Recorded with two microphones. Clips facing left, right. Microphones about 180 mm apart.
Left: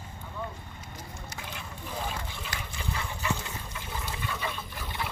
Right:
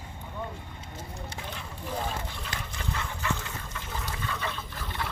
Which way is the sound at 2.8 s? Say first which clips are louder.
Even; 10° left (ahead or behind).